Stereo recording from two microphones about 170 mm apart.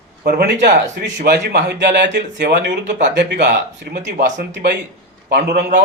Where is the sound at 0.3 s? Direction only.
70° right (ahead or behind); by 4.8 s 90° right.